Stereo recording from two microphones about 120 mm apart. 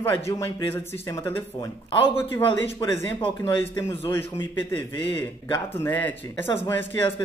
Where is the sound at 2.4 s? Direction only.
45° left (ahead or behind).